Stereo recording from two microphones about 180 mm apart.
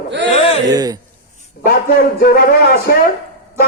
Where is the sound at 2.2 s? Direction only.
55° left (ahead or behind).